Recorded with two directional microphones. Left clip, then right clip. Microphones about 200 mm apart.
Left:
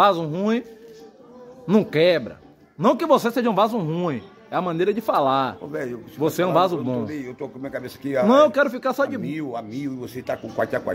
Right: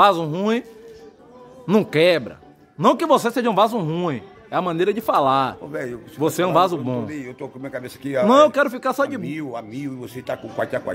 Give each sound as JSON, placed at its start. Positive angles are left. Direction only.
{"t": 0.0, "sound": "a man's voice", "side_deg": -20}
{"t": 1.7, "sound": "a man's voice", "side_deg": -15}